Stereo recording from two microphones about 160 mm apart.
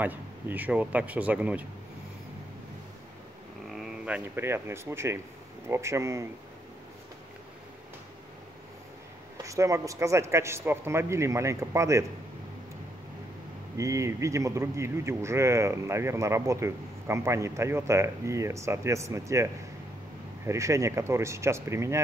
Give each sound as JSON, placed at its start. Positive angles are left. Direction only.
{"t": 0.0, "sound": "speech", "side_deg": -10}
{"t": 3.7, "sound": "speech", "side_deg": -5}
{"t": 9.4, "sound": "speech", "side_deg": -20}
{"t": 13.7, "sound": "speech", "side_deg": -20}